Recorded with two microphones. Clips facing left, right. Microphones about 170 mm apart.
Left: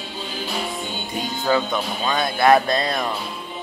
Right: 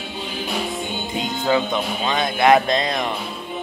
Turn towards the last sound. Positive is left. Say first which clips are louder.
# right 1 dB
turn(degrees=-20)  # may be behind; listen again after turning